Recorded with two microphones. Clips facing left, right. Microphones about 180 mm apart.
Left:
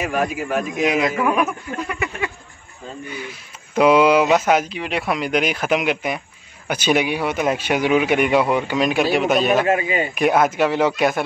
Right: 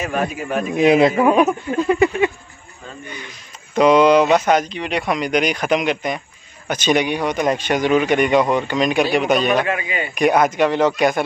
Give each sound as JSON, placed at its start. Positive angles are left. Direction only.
{"t": 0.0, "sound": "speech", "side_deg": 5}
{"t": 0.8, "sound": "speech", "side_deg": -30}
{"t": 3.1, "sound": "speech", "side_deg": 5}
{"t": 9.7, "sound": "speech", "side_deg": 35}
{"t": 10.1, "sound": "speech", "side_deg": 0}